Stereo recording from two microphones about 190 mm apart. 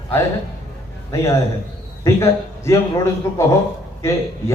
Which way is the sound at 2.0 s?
15° left (ahead or behind).